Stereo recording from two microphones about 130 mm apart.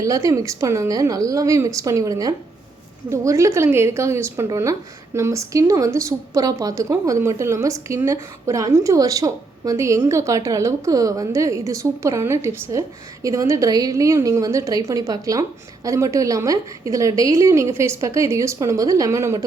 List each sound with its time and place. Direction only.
0.0 s a woman's voice: 25° right (ahead or behind)